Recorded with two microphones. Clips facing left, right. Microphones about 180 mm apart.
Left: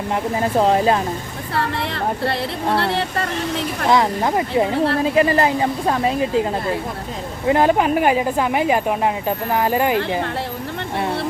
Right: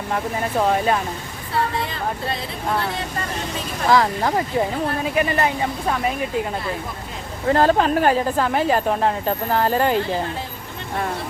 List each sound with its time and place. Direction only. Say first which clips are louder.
0.1 s speech: left 3 dB; 25° left (ahead or behind)
1.5 s speech: left 1 dB; 65° left (ahead or behind)
3.8 s speech: even; 20° left (ahead or behind)
7.4 s a woman's voice: left 1 dB; 15° left (ahead or behind)